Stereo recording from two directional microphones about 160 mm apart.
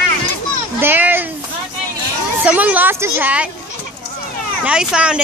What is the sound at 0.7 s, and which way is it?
Speech, 10° right (ahead or behind).